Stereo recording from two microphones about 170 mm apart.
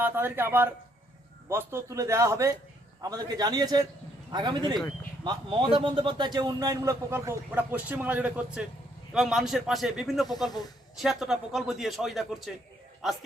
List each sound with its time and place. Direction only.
0.0 s a man's voice: 10° right (ahead or behind)